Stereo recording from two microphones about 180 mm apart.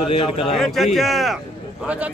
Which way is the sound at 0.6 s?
Centre (ahead or behind).